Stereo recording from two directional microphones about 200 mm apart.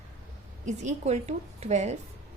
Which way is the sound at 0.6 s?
35° right (ahead or behind).